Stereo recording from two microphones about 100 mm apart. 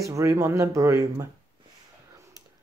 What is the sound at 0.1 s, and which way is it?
Speech, 30° right (ahead or behind).